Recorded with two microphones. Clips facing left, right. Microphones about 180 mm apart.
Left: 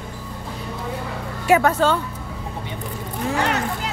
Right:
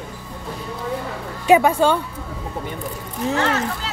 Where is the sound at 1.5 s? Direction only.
15° right (ahead or behind).